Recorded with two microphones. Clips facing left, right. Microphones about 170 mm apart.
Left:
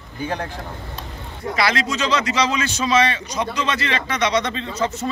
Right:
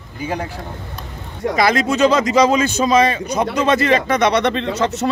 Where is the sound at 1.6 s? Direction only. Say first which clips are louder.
Right 7 dB; 50° right (ahead or behind).